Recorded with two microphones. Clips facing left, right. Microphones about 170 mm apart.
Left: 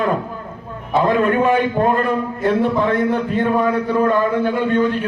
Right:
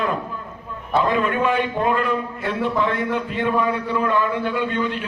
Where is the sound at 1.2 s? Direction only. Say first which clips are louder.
Left 5 dB; 45° left (ahead or behind).